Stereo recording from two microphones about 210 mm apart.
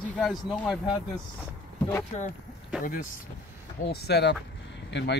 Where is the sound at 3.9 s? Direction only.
50° left (ahead or behind).